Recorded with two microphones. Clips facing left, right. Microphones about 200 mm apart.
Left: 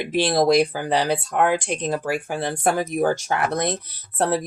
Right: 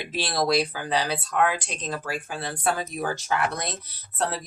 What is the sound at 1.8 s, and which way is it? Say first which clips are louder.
Speech: left 7 dB; 20° left (ahead or behind).